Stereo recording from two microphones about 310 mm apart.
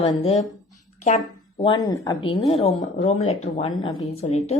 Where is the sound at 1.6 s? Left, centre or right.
Centre.